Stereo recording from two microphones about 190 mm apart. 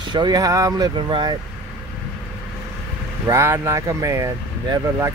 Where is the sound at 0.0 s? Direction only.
25° right (ahead or behind).